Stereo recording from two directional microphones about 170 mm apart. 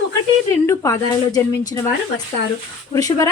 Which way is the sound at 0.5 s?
15° left (ahead or behind).